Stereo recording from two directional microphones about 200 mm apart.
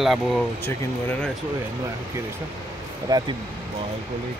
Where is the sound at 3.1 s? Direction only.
20° right (ahead or behind).